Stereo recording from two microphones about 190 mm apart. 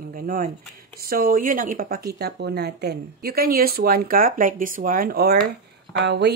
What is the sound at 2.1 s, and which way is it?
Speech, 60° right (ahead or behind).